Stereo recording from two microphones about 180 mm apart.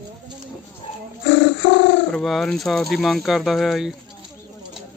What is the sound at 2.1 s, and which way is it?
Speech, centre (ahead or behind).